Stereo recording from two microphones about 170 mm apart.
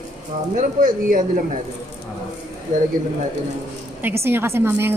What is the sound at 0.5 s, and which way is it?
Speech, 50° right (ahead or behind).